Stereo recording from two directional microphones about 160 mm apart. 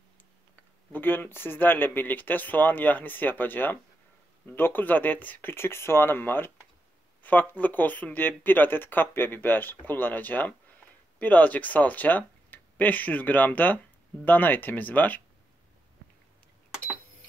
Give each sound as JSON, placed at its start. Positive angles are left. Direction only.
{"t": 0.9, "sound": "speech", "side_deg": 10}